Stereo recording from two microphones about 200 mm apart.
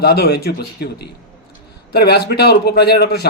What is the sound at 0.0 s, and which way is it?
A man's voice, 55° left (ahead or behind).